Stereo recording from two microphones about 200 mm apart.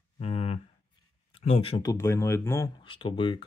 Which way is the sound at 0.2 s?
30° left (ahead or behind).